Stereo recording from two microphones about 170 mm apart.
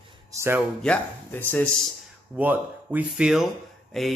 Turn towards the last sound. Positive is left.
turn(degrees=0)  # may be behind; listen again after turning